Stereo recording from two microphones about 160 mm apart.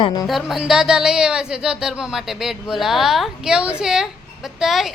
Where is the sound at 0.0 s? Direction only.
25° left (ahead or behind).